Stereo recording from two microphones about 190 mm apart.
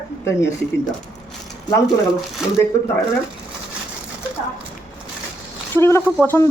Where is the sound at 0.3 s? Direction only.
15° left (ahead or behind).